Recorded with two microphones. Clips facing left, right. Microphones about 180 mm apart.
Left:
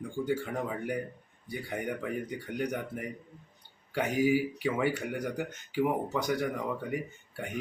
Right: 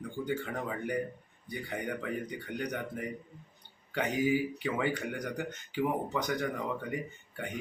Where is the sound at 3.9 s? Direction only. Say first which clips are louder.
Left 2 dB; 10° left (ahead or behind).